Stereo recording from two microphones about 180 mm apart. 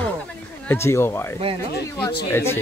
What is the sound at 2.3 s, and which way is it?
Speech, 15° left (ahead or behind).